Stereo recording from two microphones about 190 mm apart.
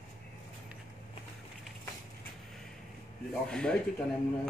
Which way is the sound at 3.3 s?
5° left (ahead or behind).